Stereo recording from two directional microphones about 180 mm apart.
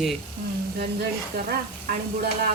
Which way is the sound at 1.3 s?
65° right (ahead or behind).